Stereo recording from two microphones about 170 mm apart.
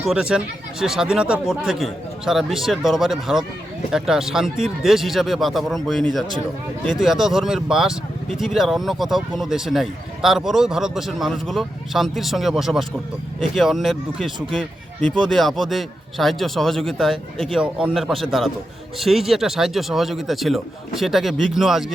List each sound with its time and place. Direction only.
0.0 s speech: 5° right (ahead or behind)